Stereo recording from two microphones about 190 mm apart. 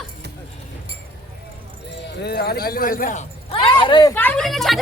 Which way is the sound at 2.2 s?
60° left (ahead or behind).